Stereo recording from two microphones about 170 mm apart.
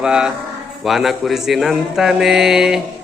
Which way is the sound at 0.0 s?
5° right (ahead or behind).